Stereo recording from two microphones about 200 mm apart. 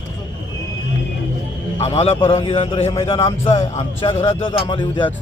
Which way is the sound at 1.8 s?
30° left (ahead or behind).